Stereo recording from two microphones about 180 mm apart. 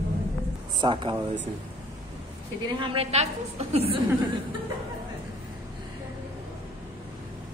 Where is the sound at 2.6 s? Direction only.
30° right (ahead or behind).